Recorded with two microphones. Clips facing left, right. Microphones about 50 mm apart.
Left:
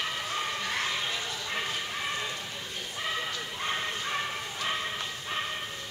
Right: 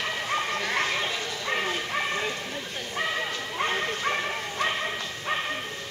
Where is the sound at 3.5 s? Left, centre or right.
Right.